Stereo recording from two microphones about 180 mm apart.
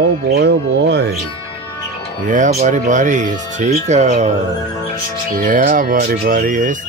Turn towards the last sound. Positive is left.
turn(degrees=-50)  # may be behind; listen again after turning